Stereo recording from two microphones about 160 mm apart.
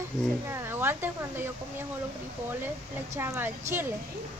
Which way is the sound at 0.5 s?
15° right (ahead or behind).